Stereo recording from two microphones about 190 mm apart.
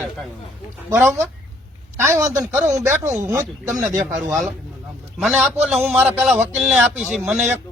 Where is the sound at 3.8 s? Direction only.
5° right (ahead or behind).